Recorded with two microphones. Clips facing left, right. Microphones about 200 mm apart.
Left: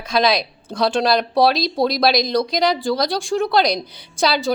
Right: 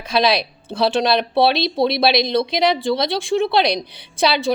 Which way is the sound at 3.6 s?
30° right (ahead or behind).